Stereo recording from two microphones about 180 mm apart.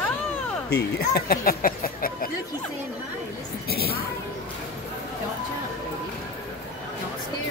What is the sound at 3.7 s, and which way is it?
Speech, 60° left (ahead or behind).